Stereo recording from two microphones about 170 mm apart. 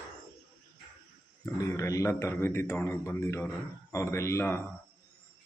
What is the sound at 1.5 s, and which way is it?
A man's voice, 20° left (ahead or behind).